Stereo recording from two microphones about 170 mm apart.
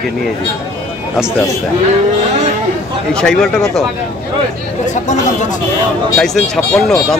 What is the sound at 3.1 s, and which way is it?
Speech, 5° left (ahead or behind).